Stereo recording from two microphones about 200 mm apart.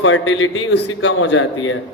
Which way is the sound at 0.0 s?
70° left (ahead or behind).